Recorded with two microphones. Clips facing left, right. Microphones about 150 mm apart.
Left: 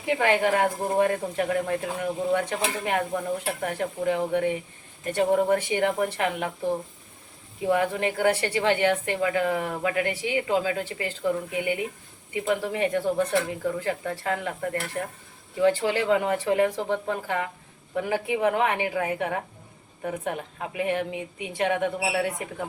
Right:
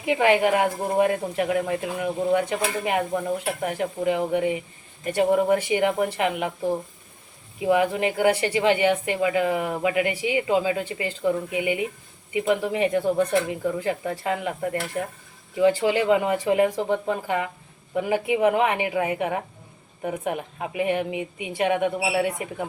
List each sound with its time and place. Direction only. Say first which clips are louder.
0.0 s speech: right 3 dB; 10° right (ahead or behind)